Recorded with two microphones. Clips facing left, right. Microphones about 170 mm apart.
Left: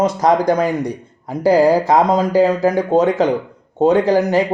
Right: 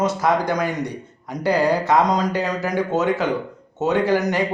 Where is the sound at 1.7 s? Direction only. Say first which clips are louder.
Left 4 dB; 30° left (ahead or behind).